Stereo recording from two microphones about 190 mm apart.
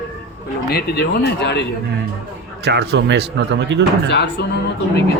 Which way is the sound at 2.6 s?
60° right (ahead or behind).